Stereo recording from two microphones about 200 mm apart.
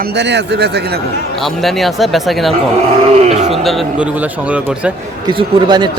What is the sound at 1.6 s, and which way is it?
Speech, centre (ahead or behind).